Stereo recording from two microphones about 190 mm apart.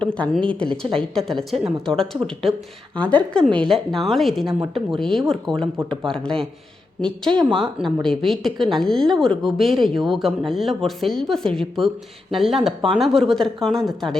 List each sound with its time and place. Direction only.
0.1 s speech: 5° left (ahead or behind)
7.3 s speech: 25° right (ahead or behind)
7.6 s speech: centre (ahead or behind)